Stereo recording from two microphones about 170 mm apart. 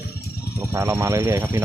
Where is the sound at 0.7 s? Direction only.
15° right (ahead or behind).